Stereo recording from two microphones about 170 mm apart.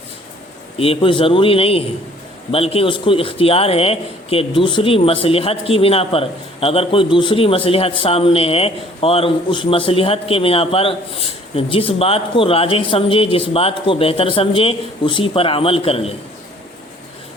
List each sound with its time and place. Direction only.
0.8 s a man's voice: 30° left (ahead or behind)